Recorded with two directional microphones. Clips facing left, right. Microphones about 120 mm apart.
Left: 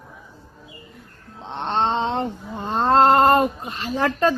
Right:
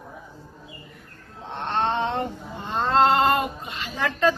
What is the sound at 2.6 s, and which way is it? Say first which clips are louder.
Speech: left 4 dB; 35° left (ahead or behind).